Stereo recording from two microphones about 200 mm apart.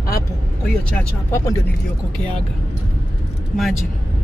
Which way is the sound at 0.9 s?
10° left (ahead or behind).